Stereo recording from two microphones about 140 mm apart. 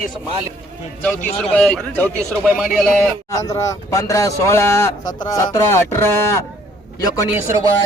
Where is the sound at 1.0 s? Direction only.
10° left (ahead or behind).